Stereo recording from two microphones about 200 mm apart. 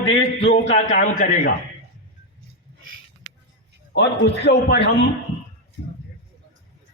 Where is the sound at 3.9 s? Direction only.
60° left (ahead or behind).